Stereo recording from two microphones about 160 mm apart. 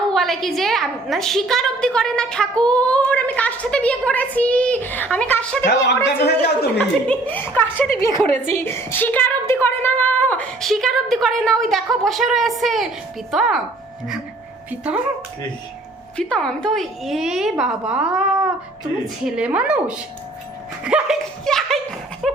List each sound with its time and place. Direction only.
0.1 s a woman's voice: centre (ahead or behind)
6.1 s speech: 90° left
7.1 s a woman's voice: 10° left (ahead or behind)
14.7 s a woman's voice: 10° right (ahead or behind)
16.1 s a woman's voice: 5° left (ahead or behind)
21.4 s a sound: centre (ahead or behind)